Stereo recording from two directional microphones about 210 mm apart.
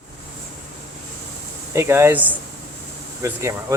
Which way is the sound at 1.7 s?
15° right (ahead or behind).